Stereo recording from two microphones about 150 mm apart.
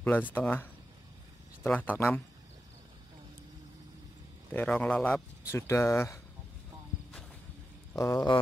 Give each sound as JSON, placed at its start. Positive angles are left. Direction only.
{"t": 0.0, "sound": "speech", "side_deg": 10}
{"t": 4.6, "sound": "speech", "side_deg": 5}
{"t": 8.0, "sound": "speech", "side_deg": 25}